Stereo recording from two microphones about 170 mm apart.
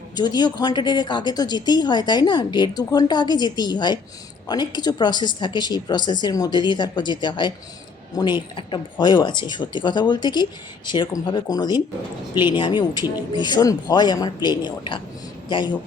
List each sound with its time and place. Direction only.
0.2 s a woman's voice: 25° left (ahead or behind)